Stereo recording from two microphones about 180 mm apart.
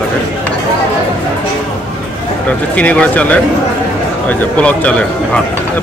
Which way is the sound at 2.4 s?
5° left (ahead or behind).